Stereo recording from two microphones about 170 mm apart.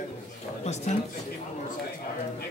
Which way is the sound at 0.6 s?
40° left (ahead or behind).